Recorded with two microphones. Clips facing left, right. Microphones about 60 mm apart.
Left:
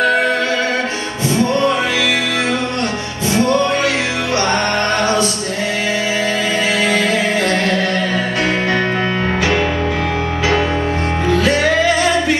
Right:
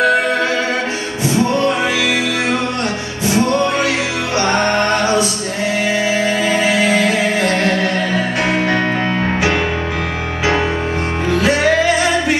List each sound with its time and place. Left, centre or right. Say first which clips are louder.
3.3 s music: even; right
11.3 s music: right 1 dB; right